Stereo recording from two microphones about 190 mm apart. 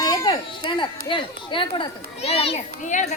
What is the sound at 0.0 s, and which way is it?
A child's voice, 20° left (ahead or behind).